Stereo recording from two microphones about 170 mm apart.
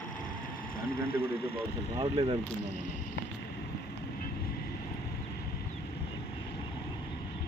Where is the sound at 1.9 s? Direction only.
35° right (ahead or behind).